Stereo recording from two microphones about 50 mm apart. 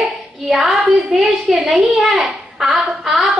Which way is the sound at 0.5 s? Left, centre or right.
Centre.